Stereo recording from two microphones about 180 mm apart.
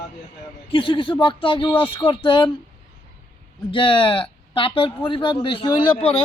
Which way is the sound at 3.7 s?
30° left (ahead or behind).